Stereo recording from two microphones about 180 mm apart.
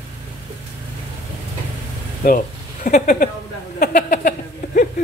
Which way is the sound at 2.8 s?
50° left (ahead or behind).